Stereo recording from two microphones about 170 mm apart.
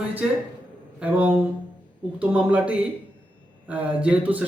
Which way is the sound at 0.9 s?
10° right (ahead or behind).